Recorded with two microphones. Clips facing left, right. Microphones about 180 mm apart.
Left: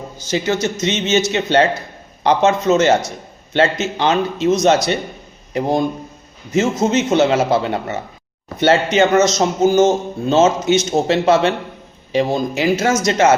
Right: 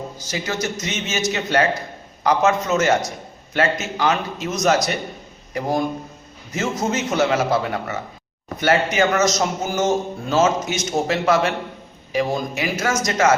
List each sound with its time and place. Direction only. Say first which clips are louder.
0.3 s a man's voice: left 7 dB; 25° left (ahead or behind)